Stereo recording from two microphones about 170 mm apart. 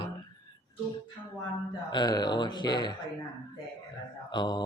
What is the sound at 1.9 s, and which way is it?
Speech, 25° left (ahead or behind).